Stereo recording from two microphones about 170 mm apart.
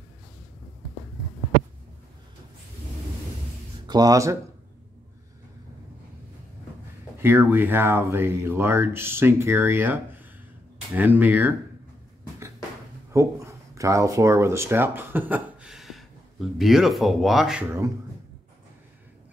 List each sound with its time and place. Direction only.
3.8 s speech: 25° right (ahead or behind)
7.2 s speech: 10° right (ahead or behind)
13.1 s speech: 15° right (ahead or behind)